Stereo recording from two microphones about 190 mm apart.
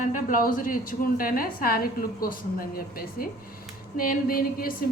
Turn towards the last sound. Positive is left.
turn(degrees=50)  # may be behind; listen again after turning